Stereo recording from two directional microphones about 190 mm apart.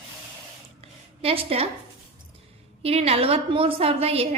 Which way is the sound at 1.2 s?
30° right (ahead or behind).